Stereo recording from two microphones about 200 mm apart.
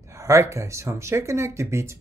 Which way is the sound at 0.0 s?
15° right (ahead or behind).